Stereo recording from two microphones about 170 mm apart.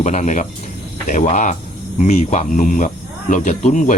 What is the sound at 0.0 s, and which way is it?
Speech, 45° left (ahead or behind).